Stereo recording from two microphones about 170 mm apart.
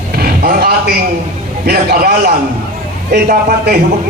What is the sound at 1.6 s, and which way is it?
A man's voice, 60° right (ahead or behind).